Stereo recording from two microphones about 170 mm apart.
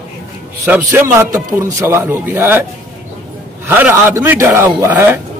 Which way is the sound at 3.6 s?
10° right (ahead or behind).